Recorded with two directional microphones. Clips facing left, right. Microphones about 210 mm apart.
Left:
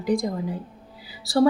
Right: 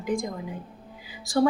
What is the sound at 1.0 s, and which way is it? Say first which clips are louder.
Music: left 3 dB; 35° left (ahead or behind).